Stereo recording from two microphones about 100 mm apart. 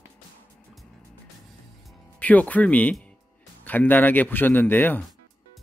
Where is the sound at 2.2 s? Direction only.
15° left (ahead or behind).